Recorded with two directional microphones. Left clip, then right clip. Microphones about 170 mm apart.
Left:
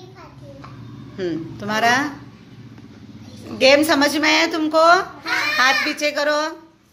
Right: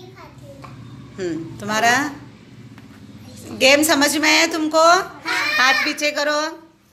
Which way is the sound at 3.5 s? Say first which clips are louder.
Even; 5° left (ahead or behind).